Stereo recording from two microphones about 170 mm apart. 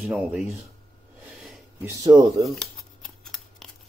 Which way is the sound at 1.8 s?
20° right (ahead or behind).